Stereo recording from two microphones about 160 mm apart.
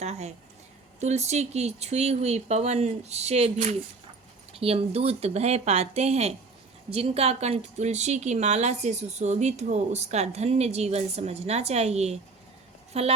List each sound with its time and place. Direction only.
0.0 s speech: 45° right (ahead or behind)